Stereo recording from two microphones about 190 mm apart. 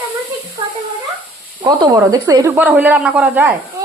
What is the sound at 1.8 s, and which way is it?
Speech, 20° right (ahead or behind).